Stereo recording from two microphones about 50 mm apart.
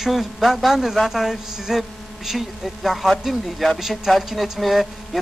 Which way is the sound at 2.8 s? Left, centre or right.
Centre.